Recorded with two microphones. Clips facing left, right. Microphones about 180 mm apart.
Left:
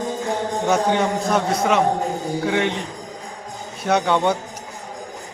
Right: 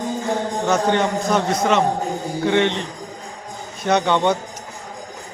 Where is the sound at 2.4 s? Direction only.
5° left (ahead or behind).